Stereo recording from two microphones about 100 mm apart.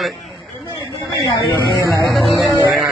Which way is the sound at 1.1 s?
35° left (ahead or behind).